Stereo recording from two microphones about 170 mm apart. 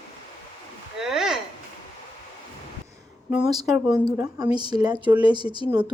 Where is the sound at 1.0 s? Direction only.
5° right (ahead or behind).